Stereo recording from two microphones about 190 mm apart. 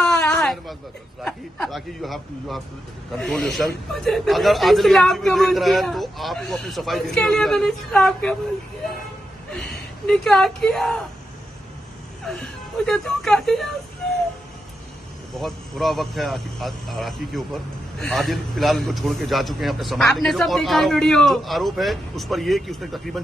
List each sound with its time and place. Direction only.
0.0 s a sound: 5° left (ahead or behind)
1.2 s speech: centre (ahead or behind)
9.6 s speech: 60° left (ahead or behind)
10.0 s speech: 5° left (ahead or behind)
12.3 s speech: 5° left (ahead or behind)
15.3 s speech: centre (ahead or behind)